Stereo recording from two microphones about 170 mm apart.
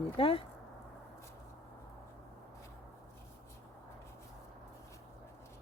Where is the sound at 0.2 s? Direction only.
35° left (ahead or behind).